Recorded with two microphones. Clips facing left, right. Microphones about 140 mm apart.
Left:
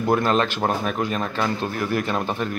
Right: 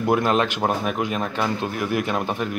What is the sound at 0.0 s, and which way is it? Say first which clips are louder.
Speech: even; 10° right (ahead or behind).